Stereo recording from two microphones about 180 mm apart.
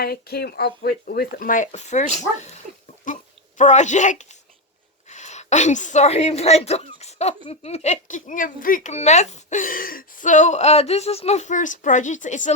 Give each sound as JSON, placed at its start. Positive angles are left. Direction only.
{"t": 0.0, "sound": "a woman's voice", "side_deg": 60}